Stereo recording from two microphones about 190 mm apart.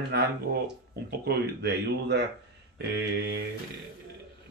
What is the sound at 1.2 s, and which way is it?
Speech, 60° right (ahead or behind).